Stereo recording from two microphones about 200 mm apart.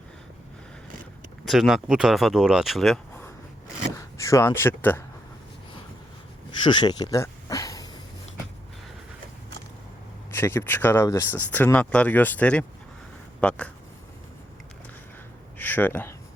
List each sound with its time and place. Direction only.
1.5 s speech: centre (ahead or behind)
3.9 s speech: 15° left (ahead or behind)
6.7 s speech: 20° left (ahead or behind)
10.3 s speech: 10° left (ahead or behind)
15.5 s speech: 10° left (ahead or behind)